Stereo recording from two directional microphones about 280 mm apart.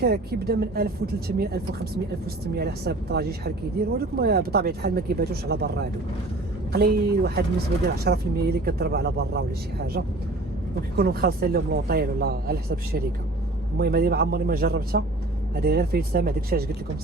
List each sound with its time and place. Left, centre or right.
0.0 s speech: right